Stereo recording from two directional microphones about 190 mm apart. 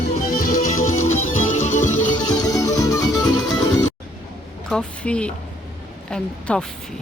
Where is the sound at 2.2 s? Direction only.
20° left (ahead or behind).